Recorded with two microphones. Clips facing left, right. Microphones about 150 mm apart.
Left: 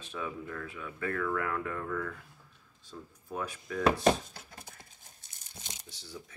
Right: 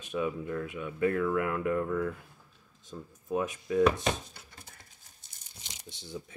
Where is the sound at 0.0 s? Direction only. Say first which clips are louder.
Right 6 dB; 15° right (ahead or behind).